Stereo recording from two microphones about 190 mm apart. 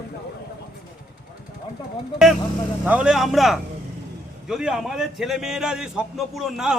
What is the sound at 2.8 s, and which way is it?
A man's voice, 5° right (ahead or behind).